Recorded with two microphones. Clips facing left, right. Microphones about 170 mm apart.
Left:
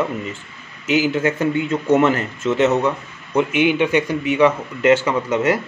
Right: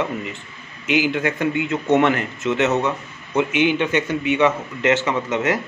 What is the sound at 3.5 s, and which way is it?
Speech, 10° left (ahead or behind).